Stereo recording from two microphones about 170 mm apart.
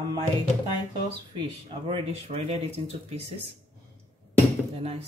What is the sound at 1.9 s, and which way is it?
Speech, 35° right (ahead or behind).